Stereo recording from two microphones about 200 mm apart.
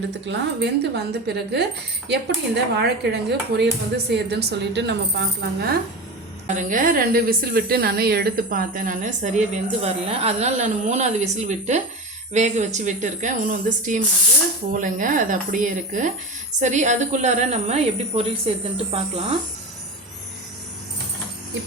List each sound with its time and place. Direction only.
0.3 s speech: 55° right (ahead or behind)
2.7 s speech: 55° right (ahead or behind)
6.5 s a woman's voice: 40° right (ahead or behind)